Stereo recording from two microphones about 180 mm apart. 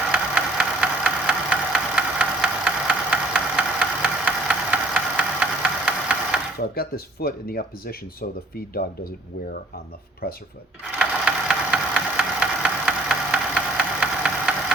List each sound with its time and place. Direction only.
0.1 s engine: 5° right (ahead or behind)
6.7 s speech: 55° left (ahead or behind)
10.2 s speech: 55° left (ahead or behind)
10.9 s engine: 5° right (ahead or behind)